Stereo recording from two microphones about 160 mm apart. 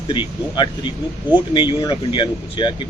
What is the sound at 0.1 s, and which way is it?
A man's voice, 30° left (ahead or behind).